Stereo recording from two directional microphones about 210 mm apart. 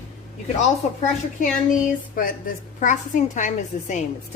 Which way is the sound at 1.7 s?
40° left (ahead or behind).